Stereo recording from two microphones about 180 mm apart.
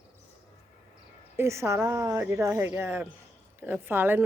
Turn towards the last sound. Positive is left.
turn(degrees=-10)  # may be behind; listen again after turning